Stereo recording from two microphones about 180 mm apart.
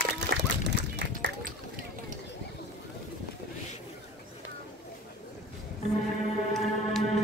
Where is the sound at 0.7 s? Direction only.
75° right (ahead or behind).